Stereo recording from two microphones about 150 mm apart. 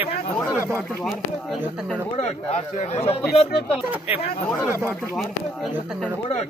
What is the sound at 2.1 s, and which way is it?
Speech, 45° left (ahead or behind).